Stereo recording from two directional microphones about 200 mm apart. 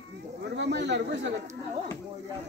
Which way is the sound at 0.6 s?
60° right (ahead or behind).